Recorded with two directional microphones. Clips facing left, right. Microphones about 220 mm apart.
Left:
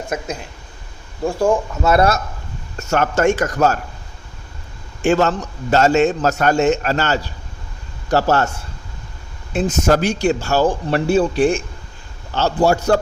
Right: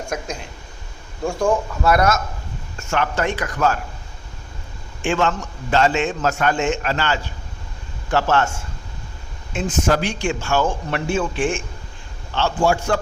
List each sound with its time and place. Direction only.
0.1 s speech: 5° left (ahead or behind)
1.8 s a man's voice: 25° left (ahead or behind)
5.0 s a man's voice: 40° left (ahead or behind)